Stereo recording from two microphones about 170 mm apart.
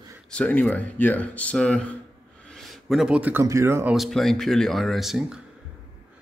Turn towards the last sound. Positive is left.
turn(degrees=-5)  # may be behind; listen again after turning